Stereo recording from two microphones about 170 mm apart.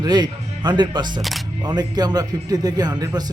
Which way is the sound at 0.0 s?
25° right (ahead or behind).